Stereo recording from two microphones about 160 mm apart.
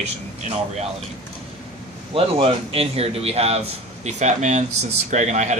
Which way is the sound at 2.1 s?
35° right (ahead or behind).